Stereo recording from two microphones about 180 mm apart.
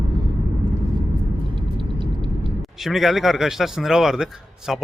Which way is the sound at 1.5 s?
30° right (ahead or behind).